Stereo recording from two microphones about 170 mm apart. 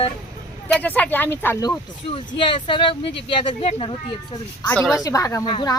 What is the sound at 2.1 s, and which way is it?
Speech, 30° left (ahead or behind).